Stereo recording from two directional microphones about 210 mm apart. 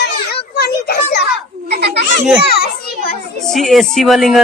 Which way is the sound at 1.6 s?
50° right (ahead or behind).